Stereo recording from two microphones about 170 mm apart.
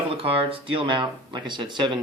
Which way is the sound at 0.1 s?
35° right (ahead or behind).